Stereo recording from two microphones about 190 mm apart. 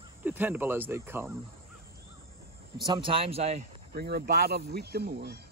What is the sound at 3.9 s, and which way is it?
Speech, 55° right (ahead or behind).